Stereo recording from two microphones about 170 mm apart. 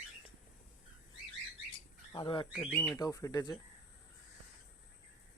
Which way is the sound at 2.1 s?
30° left (ahead or behind).